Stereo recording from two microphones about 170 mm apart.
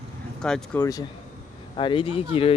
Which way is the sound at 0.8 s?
20° left (ahead or behind).